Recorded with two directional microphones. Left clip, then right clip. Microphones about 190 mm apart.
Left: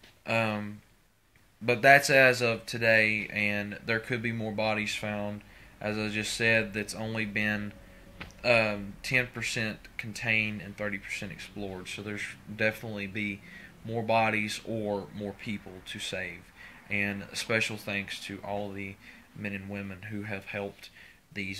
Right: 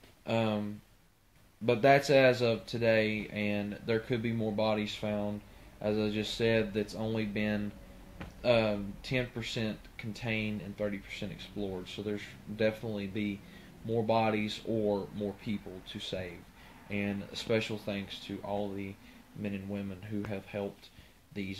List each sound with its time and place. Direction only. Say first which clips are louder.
0.3 s speech: left 3 dB; 10° left (ahead or behind)
1.7 s speech: left 4 dB; 10° left (ahead or behind)